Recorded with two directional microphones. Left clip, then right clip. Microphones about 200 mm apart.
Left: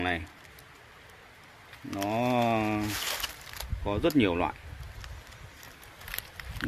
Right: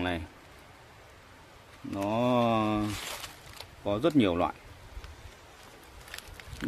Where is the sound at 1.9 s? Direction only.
15° right (ahead or behind).